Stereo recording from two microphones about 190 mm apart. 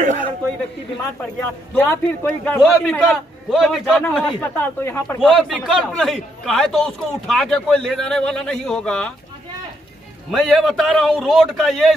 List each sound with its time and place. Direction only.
0.0 s a sound: 45° right (ahead or behind)
1.8 s a man's voice: 10° left (ahead or behind)
5.2 s a man's voice: centre (ahead or behind)
10.4 s a man's voice: centre (ahead or behind)